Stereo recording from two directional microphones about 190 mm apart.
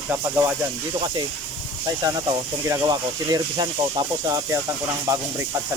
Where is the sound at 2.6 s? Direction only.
20° right (ahead or behind).